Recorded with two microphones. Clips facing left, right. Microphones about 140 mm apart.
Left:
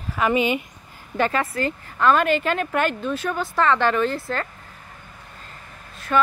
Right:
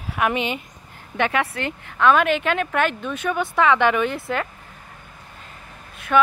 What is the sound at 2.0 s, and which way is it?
Speech, centre (ahead or behind).